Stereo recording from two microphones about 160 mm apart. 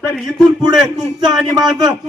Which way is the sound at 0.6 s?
25° right (ahead or behind).